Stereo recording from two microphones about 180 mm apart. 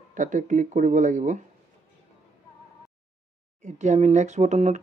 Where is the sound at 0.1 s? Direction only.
45° right (ahead or behind).